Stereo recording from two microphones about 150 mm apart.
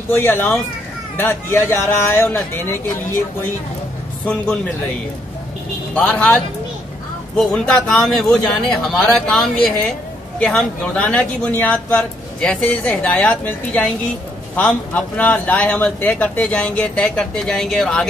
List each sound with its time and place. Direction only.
0.1 s a man's voice: 15° left (ahead or behind)
5.9 s a man's voice: 5° left (ahead or behind)